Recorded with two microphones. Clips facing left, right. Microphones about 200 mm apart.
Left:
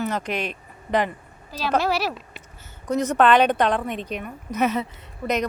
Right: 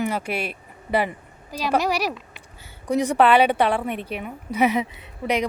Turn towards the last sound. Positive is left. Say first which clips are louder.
# right 1 dB
turn(degrees=-10)  # may be behind; listen again after turning